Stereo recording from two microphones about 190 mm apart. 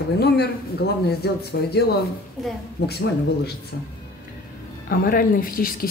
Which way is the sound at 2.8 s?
60° left (ahead or behind).